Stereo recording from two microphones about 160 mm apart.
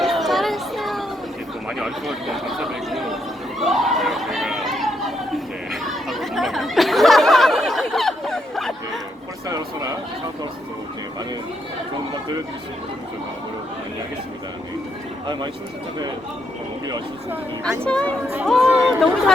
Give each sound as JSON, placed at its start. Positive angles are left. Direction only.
{"t": 0.0, "sound": "children playing", "side_deg": 0}
{"t": 1.8, "sound": "speech", "side_deg": 0}
{"t": 3.6, "sound": "chatter", "side_deg": 0}
{"t": 9.5, "sound": "a sound", "side_deg": -25}
{"t": 17.8, "sound": "speech", "side_deg": 5}
{"t": 18.7, "sound": "chatter", "side_deg": 0}